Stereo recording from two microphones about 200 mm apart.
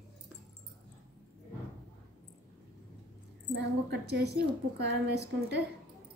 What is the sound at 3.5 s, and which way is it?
A woman's voice, 60° right (ahead or behind).